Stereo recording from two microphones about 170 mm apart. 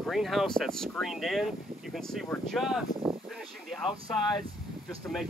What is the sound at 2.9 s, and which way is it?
Speech, 25° left (ahead or behind).